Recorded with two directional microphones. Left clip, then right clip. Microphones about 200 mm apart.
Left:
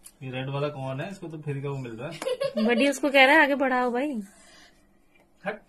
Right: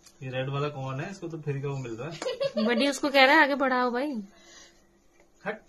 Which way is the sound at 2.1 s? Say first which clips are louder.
Left 2 dB; 5° left (ahead or behind).